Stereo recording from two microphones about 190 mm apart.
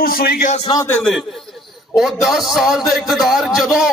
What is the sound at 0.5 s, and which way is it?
Speech, 25° left (ahead or behind).